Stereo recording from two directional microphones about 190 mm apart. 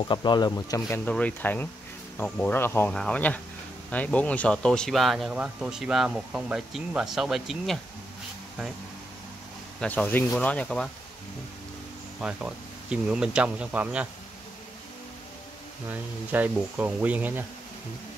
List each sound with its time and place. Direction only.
0.0 s speech: 25° left (ahead or behind); by 7.8 s centre (ahead or behind)
9.8 s speech: 10° left (ahead or behind)
12.2 s speech: 5° right (ahead or behind)
15.9 s speech: 10° right (ahead or behind)